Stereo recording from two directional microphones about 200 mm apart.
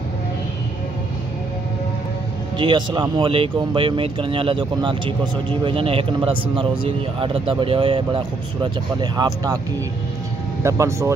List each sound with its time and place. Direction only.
2.5 s speech: 25° right (ahead or behind)
10.6 s speech: 15° right (ahead or behind)